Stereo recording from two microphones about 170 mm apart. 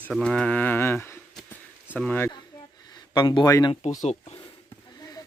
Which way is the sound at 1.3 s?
5° left (ahead or behind).